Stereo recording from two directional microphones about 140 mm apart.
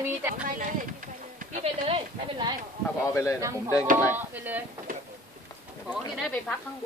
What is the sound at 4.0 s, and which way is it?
Speech, 10° right (ahead or behind).